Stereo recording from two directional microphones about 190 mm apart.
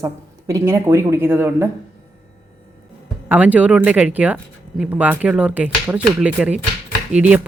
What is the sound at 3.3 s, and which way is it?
Speech, 10° right (ahead or behind).